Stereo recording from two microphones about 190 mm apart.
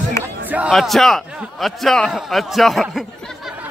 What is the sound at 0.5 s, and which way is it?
A man's voice, 5° right (ahead or behind).